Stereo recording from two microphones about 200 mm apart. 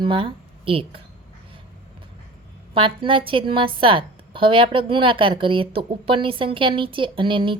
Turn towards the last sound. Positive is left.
turn(degrees=-25)  # may be behind; listen again after turning